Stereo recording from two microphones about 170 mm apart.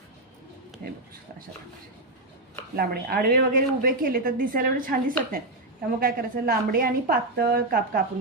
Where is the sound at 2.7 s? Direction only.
60° right (ahead or behind).